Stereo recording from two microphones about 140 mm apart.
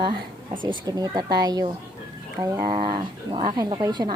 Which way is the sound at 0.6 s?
30° right (ahead or behind).